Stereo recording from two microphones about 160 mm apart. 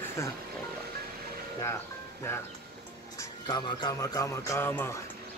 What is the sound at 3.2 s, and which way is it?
Speech, 25° left (ahead or behind).